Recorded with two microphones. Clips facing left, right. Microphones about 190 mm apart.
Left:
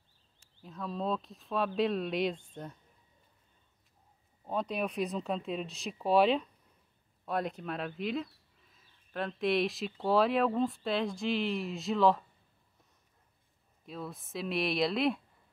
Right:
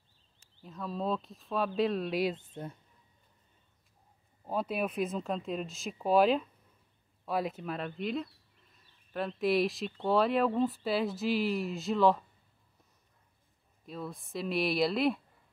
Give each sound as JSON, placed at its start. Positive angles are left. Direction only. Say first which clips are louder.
{"t": 0.6, "sound": "speech", "louder": "even", "side_deg": 0}
{"t": 4.5, "sound": "speech", "louder": "right 1 dB", "side_deg": -5}
{"t": 13.8, "sound": "speech", "louder": "right 1 dB", "side_deg": 0}